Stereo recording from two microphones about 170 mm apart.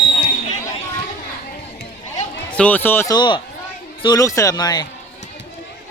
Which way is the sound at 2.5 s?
10° left (ahead or behind).